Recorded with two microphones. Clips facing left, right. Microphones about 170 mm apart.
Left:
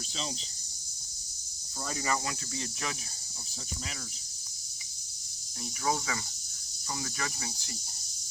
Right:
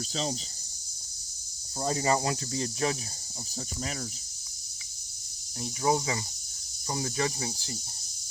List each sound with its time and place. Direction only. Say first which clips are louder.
1.8 s cricket: right 6 dB; 30° right (ahead or behind)
5.8 s cricket: right 5 dB; 25° right (ahead or behind)